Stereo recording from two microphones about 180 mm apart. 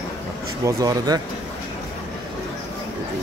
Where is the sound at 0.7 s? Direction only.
20° right (ahead or behind).